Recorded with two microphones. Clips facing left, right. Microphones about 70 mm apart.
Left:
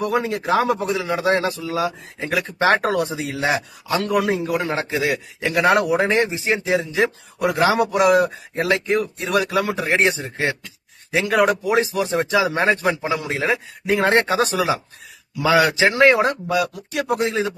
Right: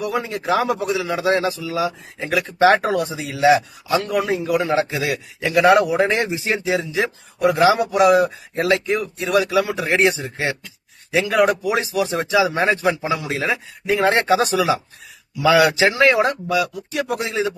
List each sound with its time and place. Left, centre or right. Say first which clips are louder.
0.0 s speech: left 2 dB; left
0.9 s speech: even; left
2.9 s speech: even; left
4.0 s speech: left 1 dB; left
4.7 s a man's voice: right 2 dB; left
6.0 s speech: even; left
6.7 s speech: left 2 dB; left
9.8 s a man's voice: right 1 dB; left
11.1 s a man's voice: right 1 dB; left
16.5 s speech: even; left